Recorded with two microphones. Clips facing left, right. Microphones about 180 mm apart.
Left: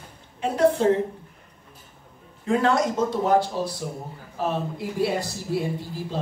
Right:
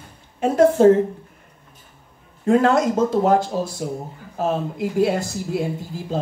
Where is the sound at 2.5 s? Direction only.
40° right (ahead or behind).